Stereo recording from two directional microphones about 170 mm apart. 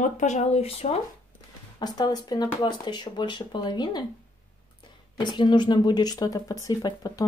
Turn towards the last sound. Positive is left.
turn(degrees=20)  # may be behind; listen again after turning